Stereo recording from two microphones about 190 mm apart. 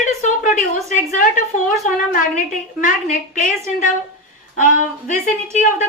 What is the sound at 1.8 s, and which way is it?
Speech, 45° left (ahead or behind).